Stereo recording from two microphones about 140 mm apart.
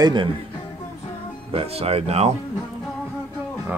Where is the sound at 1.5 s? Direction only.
45° right (ahead or behind).